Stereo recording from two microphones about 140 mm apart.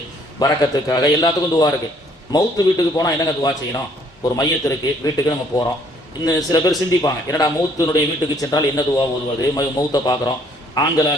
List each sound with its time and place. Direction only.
0.3 s a man's voice: 25° left (ahead or behind)